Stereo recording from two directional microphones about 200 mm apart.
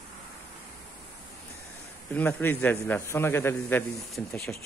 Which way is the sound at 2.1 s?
10° left (ahead or behind).